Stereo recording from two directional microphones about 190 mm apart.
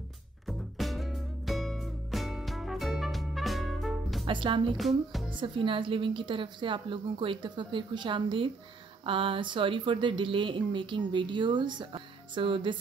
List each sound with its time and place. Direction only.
0.5 s music: centre (ahead or behind)
4.3 s speech: 25° right (ahead or behind)
4.7 s music: centre (ahead or behind)
5.3 s speech: 25° right (ahead or behind)